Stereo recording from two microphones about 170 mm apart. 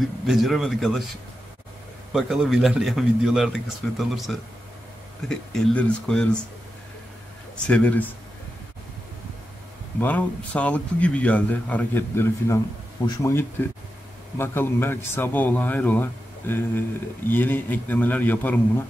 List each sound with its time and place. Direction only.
0.3 s a man's voice: centre (ahead or behind)
2.1 s a man's voice: centre (ahead or behind)
7.5 s a man's voice: 5° left (ahead or behind)
9.9 s a man's voice: 10° left (ahead or behind)